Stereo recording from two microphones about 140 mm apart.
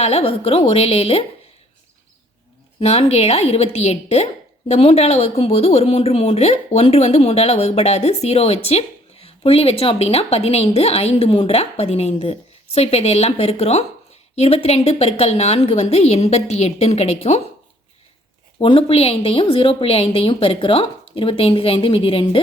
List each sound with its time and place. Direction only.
0.0 s speech: 45° left (ahead or behind)
2.8 s speech: 45° left (ahead or behind)
18.6 s a woman's voice: 40° left (ahead or behind)